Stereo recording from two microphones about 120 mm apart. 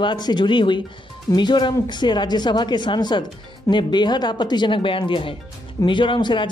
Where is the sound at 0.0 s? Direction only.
40° left (ahead or behind).